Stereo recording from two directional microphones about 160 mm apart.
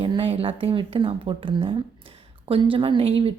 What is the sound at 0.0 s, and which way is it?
A woman's voice, 35° right (ahead or behind).